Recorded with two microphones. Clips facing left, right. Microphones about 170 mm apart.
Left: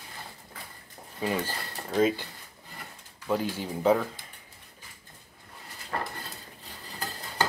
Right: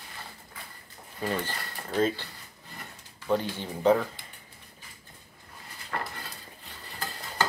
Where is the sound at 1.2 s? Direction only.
10° left (ahead or behind).